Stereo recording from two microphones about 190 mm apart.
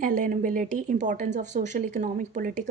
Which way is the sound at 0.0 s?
45° right (ahead or behind).